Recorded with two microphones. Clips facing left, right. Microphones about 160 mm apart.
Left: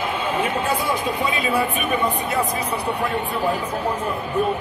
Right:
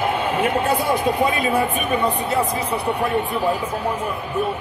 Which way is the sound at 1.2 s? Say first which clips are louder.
Right 3 dB; 50° right (ahead or behind).